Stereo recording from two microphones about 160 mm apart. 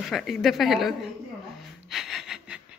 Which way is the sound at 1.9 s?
5° right (ahead or behind).